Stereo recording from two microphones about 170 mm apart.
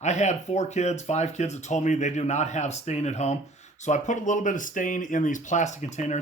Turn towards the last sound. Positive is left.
turn(degrees=40)  # may be behind; listen again after turning